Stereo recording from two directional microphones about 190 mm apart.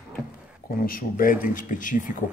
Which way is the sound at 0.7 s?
50° left (ahead or behind).